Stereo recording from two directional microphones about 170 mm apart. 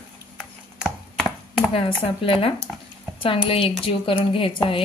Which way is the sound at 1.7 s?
30° left (ahead or behind).